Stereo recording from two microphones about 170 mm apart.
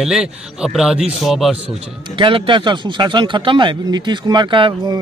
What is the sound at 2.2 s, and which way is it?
A man's voice, 30° right (ahead or behind).